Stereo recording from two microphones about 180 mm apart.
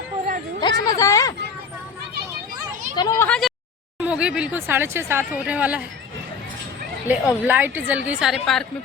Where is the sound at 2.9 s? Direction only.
20° left (ahead or behind).